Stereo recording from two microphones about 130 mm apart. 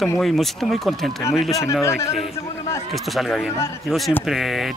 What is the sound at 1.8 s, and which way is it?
Speech, 20° left (ahead or behind).